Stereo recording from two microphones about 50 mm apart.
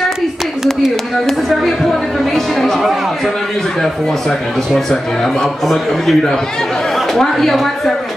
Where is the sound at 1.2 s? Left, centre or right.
Centre.